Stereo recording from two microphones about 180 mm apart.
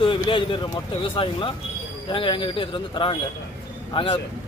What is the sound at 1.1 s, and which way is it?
Speech, 30° left (ahead or behind).